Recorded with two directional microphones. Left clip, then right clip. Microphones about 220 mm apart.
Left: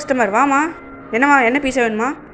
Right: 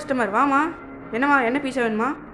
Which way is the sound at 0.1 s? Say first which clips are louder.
Left 5 dB; 10° left (ahead or behind).